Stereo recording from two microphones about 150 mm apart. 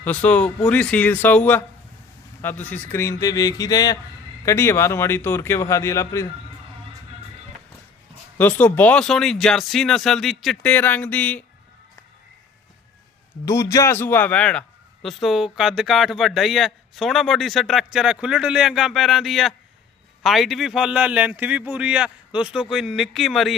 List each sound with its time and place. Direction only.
0.0 s a man's voice: 10° left (ahead or behind)
8.4 s speech: 10° left (ahead or behind)
13.4 s a man's voice: 20° left (ahead or behind); by 23.6 s centre (ahead or behind)